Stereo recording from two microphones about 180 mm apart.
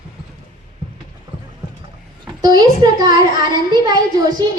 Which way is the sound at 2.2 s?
20° right (ahead or behind).